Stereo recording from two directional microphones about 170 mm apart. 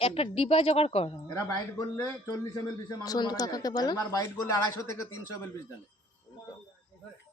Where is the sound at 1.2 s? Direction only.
20° left (ahead or behind).